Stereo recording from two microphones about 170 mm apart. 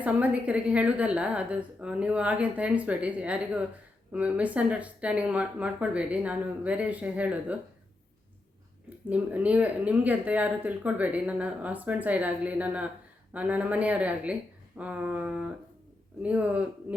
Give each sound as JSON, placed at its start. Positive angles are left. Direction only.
{"t": 0.0, "sound": "speech", "side_deg": -10}
{"t": 9.0, "sound": "speech", "side_deg": -10}